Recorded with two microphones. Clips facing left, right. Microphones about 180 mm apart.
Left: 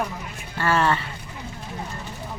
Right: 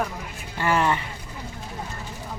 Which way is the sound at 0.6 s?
15° right (ahead or behind).